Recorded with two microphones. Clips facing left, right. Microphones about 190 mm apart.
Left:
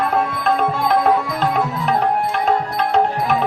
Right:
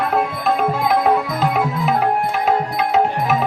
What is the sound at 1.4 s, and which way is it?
Music, 5° right (ahead or behind).